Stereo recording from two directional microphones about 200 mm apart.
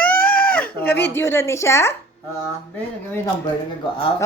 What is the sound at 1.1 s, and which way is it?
Speech, 10° left (ahead or behind).